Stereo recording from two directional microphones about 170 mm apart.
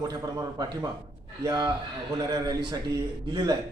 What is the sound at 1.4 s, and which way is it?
Speech, 25° right (ahead or behind).